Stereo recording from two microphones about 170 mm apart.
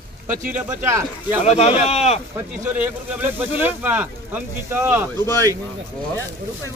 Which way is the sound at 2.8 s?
10° right (ahead or behind).